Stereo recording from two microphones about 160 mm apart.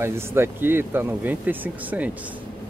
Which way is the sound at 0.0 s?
15° right (ahead or behind).